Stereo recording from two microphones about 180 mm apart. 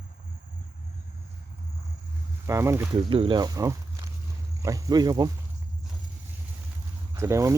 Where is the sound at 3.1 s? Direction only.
30° right (ahead or behind).